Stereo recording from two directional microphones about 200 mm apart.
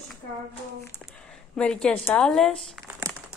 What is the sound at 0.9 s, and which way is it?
Speech, 10° left (ahead or behind).